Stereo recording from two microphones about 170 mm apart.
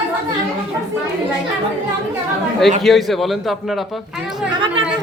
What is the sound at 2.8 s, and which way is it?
A man's voice, centre (ahead or behind).